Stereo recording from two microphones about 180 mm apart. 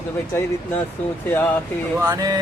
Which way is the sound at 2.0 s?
20° right (ahead or behind).